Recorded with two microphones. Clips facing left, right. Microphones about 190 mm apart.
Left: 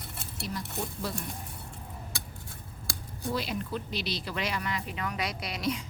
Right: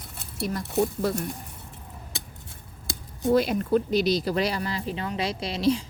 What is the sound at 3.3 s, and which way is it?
Speech, 50° right (ahead or behind).